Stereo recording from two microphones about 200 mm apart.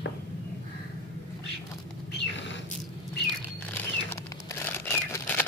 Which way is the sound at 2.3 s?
65° left (ahead or behind).